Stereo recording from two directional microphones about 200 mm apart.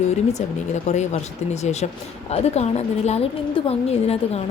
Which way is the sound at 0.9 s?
35° left (ahead or behind).